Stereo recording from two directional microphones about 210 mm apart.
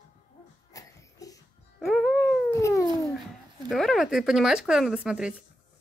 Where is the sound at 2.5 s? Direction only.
15° left (ahead or behind).